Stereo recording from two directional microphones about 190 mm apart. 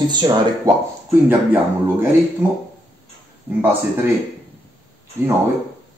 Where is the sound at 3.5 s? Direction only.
10° right (ahead or behind).